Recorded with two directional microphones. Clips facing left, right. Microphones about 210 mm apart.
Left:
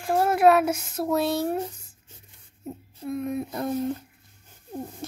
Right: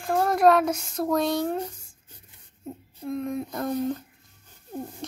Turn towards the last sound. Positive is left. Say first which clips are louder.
# even
turn(degrees=5)  # may be behind; listen again after turning